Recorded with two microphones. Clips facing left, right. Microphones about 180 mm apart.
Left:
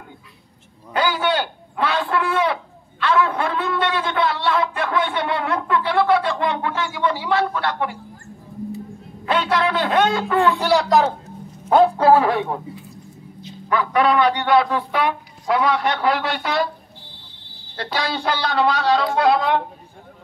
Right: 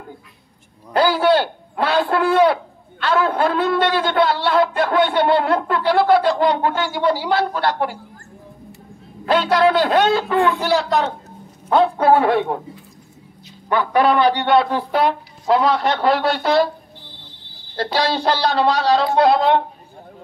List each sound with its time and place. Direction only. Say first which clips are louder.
0.9 s a man's voice: right 5 dB; 35° right (ahead or behind)
9.2 s a man's voice: right 5 dB; 35° right (ahead or behind)
10.6 s a woman's voice: left 2 dB; centre (ahead or behind)
13.7 s a man's voice: right 2 dB; 30° right (ahead or behind)
17.9 s a man's voice: right 4 dB; 35° right (ahead or behind)